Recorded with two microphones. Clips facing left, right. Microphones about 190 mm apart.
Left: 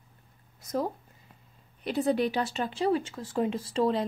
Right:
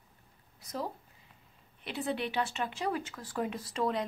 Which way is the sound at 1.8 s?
40° left (ahead or behind).